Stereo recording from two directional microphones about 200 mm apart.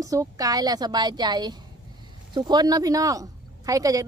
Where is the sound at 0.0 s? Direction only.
15° right (ahead or behind).